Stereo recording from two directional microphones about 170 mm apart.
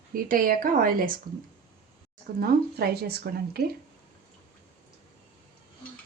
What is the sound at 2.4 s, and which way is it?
Speech, 65° right (ahead or behind).